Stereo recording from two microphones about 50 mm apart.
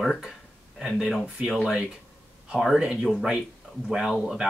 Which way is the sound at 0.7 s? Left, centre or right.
Centre.